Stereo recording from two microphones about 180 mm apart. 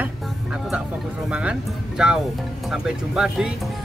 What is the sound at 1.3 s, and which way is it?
Speech, 5° right (ahead or behind).